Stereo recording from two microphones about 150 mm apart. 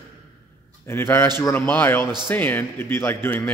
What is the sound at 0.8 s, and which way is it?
A man's voice, 15° left (ahead or behind).